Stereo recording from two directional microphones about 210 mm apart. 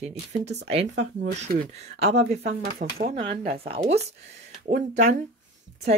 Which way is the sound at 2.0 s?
30° right (ahead or behind).